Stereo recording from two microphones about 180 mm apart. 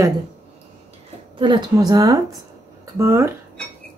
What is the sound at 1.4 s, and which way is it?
A woman's voice, 25° right (ahead or behind).